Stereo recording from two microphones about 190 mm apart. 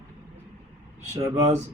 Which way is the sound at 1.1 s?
35° right (ahead or behind).